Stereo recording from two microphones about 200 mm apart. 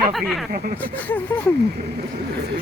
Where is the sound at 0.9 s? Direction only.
10° left (ahead or behind).